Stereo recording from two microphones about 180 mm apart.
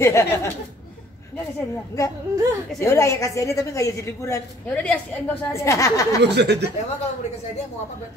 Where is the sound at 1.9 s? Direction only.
15° left (ahead or behind).